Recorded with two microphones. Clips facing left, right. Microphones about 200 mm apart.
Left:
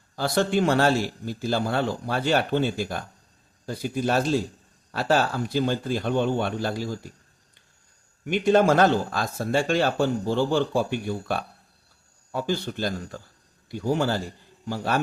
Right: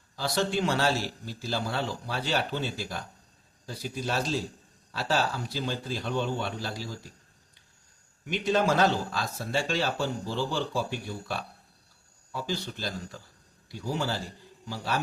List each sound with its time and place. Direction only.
0.2 s speech: 55° left (ahead or behind)
8.2 s speech: 50° left (ahead or behind)